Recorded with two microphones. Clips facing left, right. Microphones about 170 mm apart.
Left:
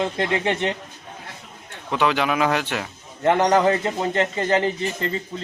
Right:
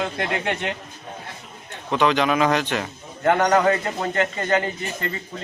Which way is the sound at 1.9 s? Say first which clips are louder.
Right 2 dB; 10° left (ahead or behind).